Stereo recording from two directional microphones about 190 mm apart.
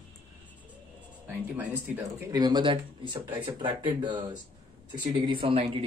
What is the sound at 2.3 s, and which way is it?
Speech, 20° right (ahead or behind).